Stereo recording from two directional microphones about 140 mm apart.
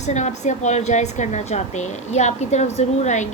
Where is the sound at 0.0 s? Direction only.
55° left (ahead or behind).